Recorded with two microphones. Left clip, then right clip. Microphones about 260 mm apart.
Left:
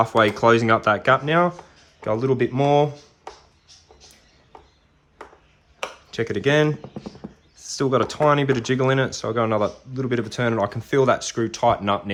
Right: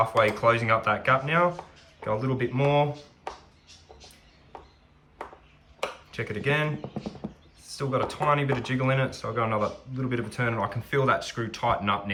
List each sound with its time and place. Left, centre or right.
0.3 s speech: left
6.1 s speech: left
6.8 s speech: centre
7.6 s speech: left